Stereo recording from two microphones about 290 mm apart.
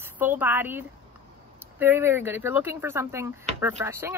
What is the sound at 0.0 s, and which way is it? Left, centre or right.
Speech, centre.